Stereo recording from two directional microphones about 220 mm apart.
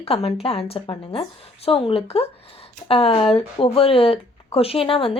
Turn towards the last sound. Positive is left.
turn(degrees=25)  # may be behind; listen again after turning